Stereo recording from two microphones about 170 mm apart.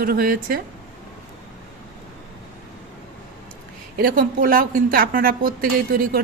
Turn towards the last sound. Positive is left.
turn(degrees=-60)  # may be behind; listen again after turning